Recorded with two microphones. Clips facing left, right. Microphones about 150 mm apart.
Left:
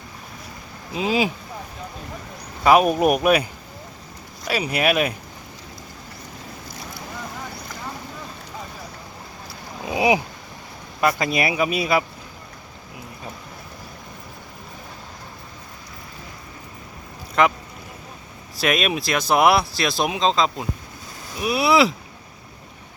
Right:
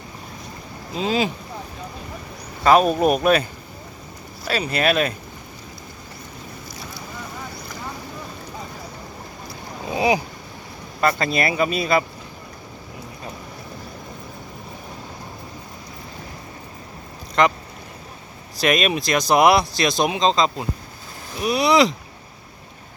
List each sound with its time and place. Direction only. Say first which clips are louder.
0.9 s speech: even; 10° left (ahead or behind)
2.6 s speech: even; 10° left (ahead or behind)
4.4 s speech: even; 10° left (ahead or behind)
9.9 s a sound: left 1 dB; 15° left (ahead or behind)
11.0 s speech: even; 10° left (ahead or behind)
17.4 s speech: even; 5° left (ahead or behind)
18.5 s speech: right 2 dB; centre (ahead or behind)